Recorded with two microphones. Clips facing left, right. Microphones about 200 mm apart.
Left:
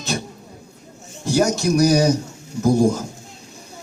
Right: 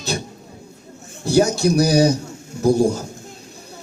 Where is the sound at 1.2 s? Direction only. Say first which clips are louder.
Right 2 dB; 35° right (ahead or behind).